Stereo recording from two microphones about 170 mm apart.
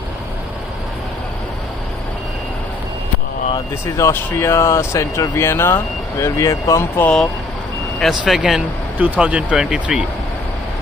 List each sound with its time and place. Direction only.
3.5 s speech: 15° left (ahead or behind)
8.0 s speech: centre (ahead or behind)